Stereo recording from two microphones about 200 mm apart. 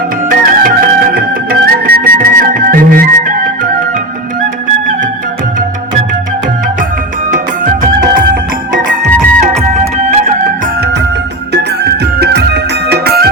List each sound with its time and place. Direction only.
0.3 s music: 45° right (ahead or behind)
7.3 s music: 40° right (ahead or behind)
9.0 s music: 5° left (ahead or behind)
9.7 s music: 35° right (ahead or behind)
11.5 s music: 55° right (ahead or behind)